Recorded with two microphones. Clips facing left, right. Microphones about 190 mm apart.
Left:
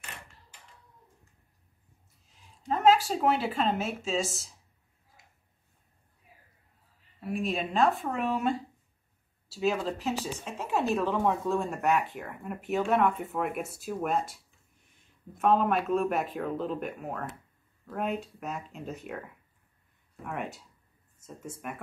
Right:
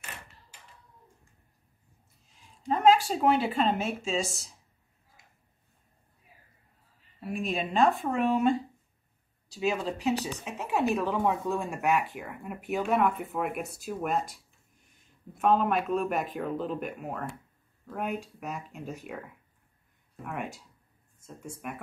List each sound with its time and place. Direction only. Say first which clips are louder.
2.7 s speech: right 1 dB; centre (ahead or behind)
7.2 s speech: left 1 dB; centre (ahead or behind)
9.6 s speech: left 1 dB; 5° right (ahead or behind)
15.3 s speech: even; centre (ahead or behind)